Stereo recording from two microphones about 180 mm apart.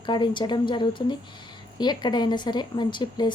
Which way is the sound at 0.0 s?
25° left (ahead or behind).